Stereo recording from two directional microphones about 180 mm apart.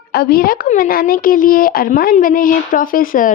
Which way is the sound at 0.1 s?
55° left (ahead or behind).